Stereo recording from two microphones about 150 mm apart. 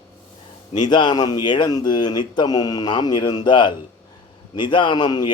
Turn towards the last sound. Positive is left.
turn(degrees=30)  # may be behind; listen again after turning